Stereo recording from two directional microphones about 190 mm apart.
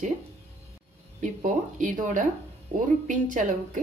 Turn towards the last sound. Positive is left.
turn(degrees=-45)  # may be behind; listen again after turning